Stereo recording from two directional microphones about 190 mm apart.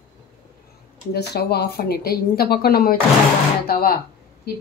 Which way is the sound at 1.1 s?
60° left (ahead or behind).